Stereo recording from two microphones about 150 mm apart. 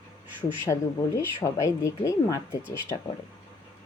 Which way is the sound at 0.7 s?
20° left (ahead or behind).